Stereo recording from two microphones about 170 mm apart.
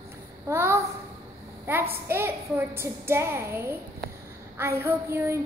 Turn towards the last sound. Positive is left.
turn(degrees=-15)  # may be behind; listen again after turning